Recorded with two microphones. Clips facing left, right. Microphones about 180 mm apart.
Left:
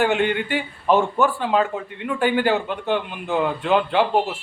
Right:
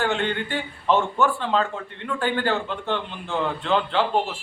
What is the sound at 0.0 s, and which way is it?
A man's voice, 15° left (ahead or behind).